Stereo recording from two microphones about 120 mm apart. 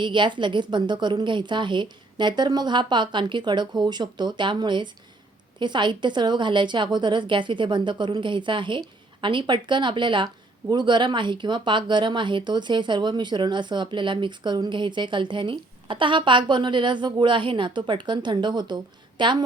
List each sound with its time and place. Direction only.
0.0 s speech: 40° right (ahead or behind)